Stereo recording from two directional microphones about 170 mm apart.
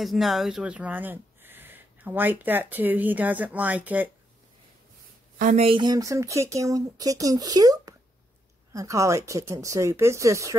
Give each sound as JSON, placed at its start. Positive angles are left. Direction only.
{"t": 0.0, "sound": "speech", "side_deg": 0}
{"t": 5.4, "sound": "speech", "side_deg": -50}
{"t": 5.7, "sound": "speech", "side_deg": -25}